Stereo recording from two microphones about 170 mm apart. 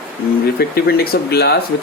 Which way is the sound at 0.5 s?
65° left (ahead or behind).